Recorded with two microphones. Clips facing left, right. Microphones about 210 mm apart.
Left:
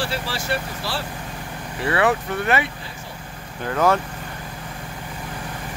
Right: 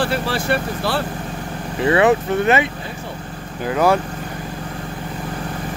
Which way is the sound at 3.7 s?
10° right (ahead or behind).